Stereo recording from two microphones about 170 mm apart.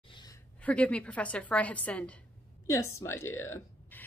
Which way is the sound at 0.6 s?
10° left (ahead or behind).